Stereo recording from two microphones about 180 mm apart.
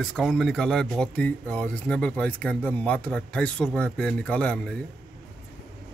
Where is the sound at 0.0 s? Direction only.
Centre (ahead or behind).